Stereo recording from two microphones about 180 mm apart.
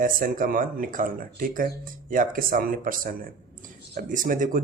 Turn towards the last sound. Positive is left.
turn(degrees=-50)  # may be behind; listen again after turning